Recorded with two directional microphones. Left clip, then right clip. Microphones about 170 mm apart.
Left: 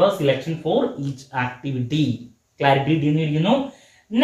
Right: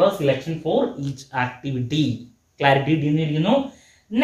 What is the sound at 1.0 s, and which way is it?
Speech, 25° right (ahead or behind).